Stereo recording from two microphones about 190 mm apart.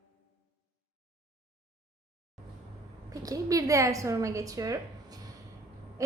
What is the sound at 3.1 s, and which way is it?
A woman's voice, 20° right (ahead or behind).